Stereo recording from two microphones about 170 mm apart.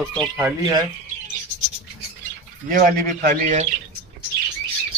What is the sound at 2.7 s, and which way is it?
Speech, 55° right (ahead or behind).